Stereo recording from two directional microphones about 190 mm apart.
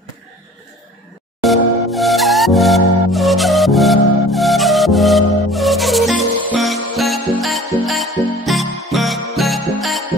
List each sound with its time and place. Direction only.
1.4 s music: centre (ahead or behind)